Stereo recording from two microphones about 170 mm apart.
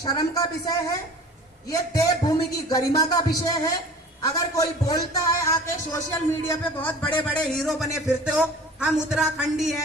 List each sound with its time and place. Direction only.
0.0 s a man's voice: 20° left (ahead or behind); by 9.7 s 5° right (ahead or behind)